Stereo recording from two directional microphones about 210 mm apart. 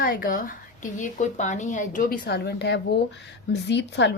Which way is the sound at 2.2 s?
50° left (ahead or behind).